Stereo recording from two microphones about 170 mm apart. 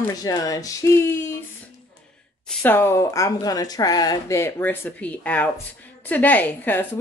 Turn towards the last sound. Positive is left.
turn(degrees=10)  # may be behind; listen again after turning